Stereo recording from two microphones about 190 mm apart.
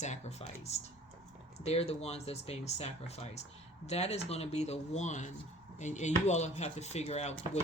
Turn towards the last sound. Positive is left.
turn(degrees=35)  # may be behind; listen again after turning